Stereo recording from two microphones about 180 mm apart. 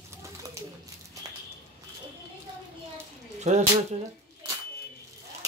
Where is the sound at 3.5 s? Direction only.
40° right (ahead or behind).